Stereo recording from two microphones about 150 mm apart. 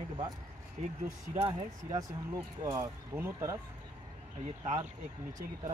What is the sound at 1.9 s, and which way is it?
Speech, 25° right (ahead or behind).